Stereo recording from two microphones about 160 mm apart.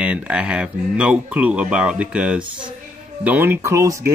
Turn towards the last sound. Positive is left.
turn(degrees=-20)  # may be behind; listen again after turning